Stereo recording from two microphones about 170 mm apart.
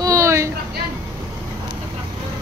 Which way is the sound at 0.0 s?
15° right (ahead or behind).